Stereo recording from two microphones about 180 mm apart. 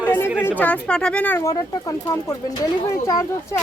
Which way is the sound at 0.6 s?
5° left (ahead or behind).